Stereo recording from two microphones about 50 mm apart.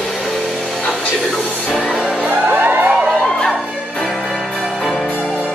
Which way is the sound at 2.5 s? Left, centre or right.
Right.